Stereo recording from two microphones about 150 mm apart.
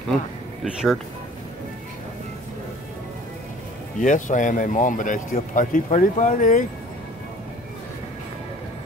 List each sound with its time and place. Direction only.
0.7 s speech: 5° right (ahead or behind)
4.0 s speech: 55° left (ahead or behind)